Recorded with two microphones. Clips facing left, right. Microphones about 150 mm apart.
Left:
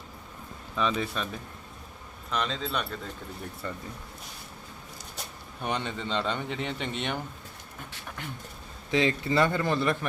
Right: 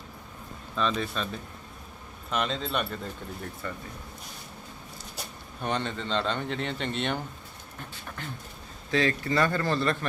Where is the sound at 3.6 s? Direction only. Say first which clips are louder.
Left 1 dB; 25° left (ahead or behind).